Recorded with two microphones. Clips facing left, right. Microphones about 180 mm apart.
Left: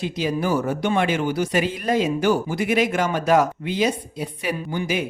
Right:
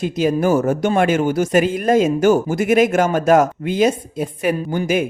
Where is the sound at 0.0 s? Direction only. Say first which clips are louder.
Right 6 dB; 50° right (ahead or behind).